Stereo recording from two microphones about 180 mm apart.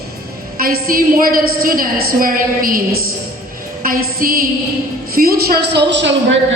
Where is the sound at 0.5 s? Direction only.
55° right (ahead or behind).